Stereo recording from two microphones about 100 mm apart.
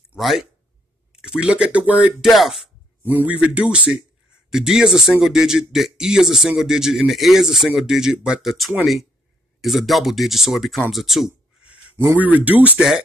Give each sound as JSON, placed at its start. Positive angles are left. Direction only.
{"t": 0.2, "sound": "speech", "side_deg": 0}
{"t": 2.2, "sound": "speech", "side_deg": 0}
{"t": 3.0, "sound": "speech", "side_deg": -20}
{"t": 11.6, "sound": "speech", "side_deg": -15}